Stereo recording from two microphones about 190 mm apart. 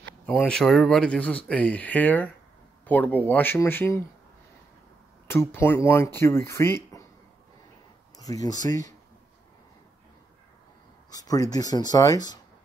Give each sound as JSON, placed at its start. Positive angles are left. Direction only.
{"t": 0.3, "sound": "speech", "side_deg": 5}
{"t": 5.3, "sound": "speech", "side_deg": 10}
{"t": 8.2, "sound": "speech", "side_deg": 20}
{"t": 11.1, "sound": "speech", "side_deg": 20}